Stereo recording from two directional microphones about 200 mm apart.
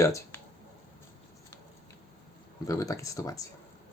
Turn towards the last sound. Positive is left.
turn(degrees=15)  # may be behind; listen again after turning